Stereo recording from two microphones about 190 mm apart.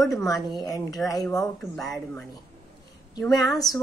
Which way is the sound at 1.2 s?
Centre (ahead or behind).